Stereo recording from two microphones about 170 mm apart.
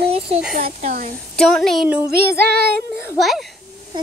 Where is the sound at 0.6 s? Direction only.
45° right (ahead or behind).